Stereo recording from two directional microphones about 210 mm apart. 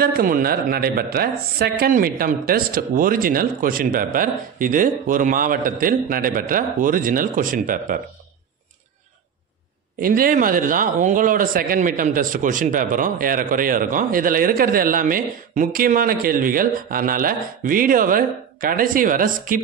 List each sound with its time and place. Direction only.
0.0 s speech: 45° right (ahead or behind)
9.9 s speech: 45° right (ahead or behind)